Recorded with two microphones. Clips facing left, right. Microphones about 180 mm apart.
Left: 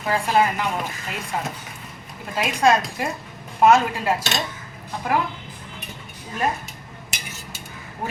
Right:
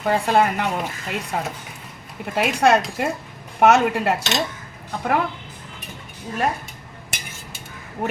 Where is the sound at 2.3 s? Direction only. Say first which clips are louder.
Right 2 dB; 65° right (ahead or behind).